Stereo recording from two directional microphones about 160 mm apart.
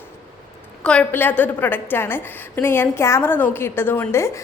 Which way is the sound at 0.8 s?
10° left (ahead or behind).